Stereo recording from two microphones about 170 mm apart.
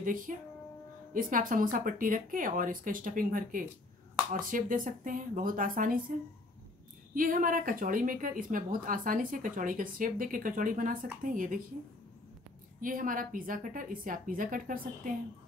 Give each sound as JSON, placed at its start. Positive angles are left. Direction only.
{"t": 0.0, "sound": "music", "side_deg": -55}
{"t": 1.1, "sound": "a woman's voice", "side_deg": -55}
{"t": 7.2, "sound": "a woman's voice", "side_deg": -55}
{"t": 12.8, "sound": "a woman's voice", "side_deg": -55}